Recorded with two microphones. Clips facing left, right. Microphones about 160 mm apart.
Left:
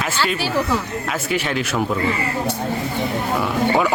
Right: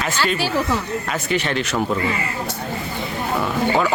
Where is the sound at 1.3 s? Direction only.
5° left (ahead or behind).